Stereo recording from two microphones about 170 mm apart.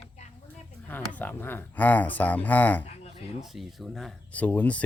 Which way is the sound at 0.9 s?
10° left (ahead or behind).